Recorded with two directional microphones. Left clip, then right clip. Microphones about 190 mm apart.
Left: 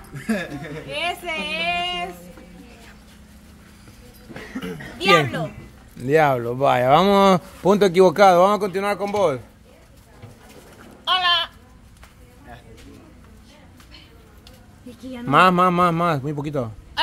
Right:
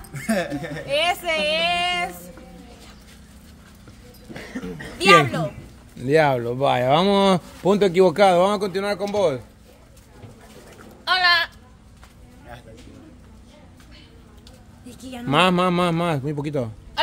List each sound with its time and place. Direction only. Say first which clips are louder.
0.3 s a woman's voice: right 3 dB; 65° right (ahead or behind)
4.9 s speech: right 3 dB; 20° right (ahead or behind)
5.9 s speech: left 1 dB; centre (ahead or behind); by 9.4 s 20° left (ahead or behind)
11.1 s goat: right 1 dB; 15° right (ahead or behind)
15.2 s a man's voice: left 3 dB; centre (ahead or behind)